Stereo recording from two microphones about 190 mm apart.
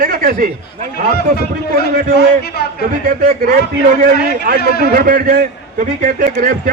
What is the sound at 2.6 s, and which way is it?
Speech, 55° left (ahead or behind).